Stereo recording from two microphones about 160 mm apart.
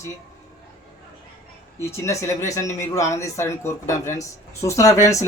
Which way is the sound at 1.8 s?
15° left (ahead or behind).